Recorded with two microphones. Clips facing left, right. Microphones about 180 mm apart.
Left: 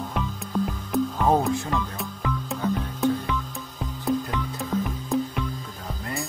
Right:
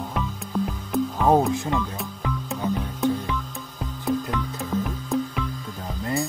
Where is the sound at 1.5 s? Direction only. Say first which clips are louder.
Right 1 dB; 15° right (ahead or behind).